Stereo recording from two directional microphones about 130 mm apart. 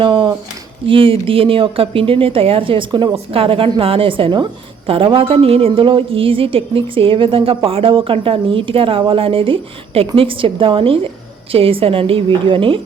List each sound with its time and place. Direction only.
0.0 s a woman's voice: 40° right (ahead or behind)